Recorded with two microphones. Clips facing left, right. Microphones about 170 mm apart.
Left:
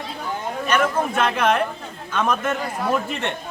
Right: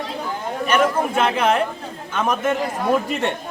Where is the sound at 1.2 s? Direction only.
10° right (ahead or behind).